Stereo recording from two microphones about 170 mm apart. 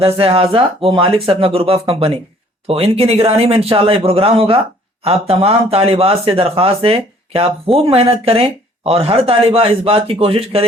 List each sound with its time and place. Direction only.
0.0 s speech: 35° right (ahead or behind)